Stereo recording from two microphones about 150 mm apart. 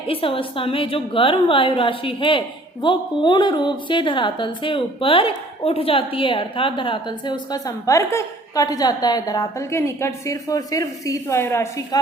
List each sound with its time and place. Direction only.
0.1 s a woman's voice: 35° left (ahead or behind); by 11.9 s 20° left (ahead or behind)